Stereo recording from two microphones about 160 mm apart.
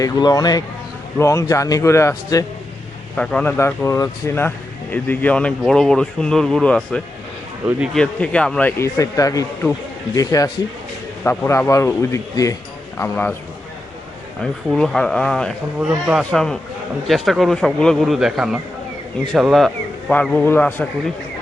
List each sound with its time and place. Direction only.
0.0 s speech: 25° left (ahead or behind)
14.7 s speech: 5° left (ahead or behind)